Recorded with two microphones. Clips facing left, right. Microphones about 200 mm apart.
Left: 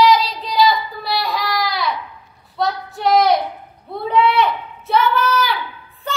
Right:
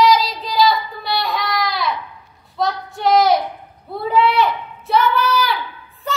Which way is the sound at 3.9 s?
Centre (ahead or behind).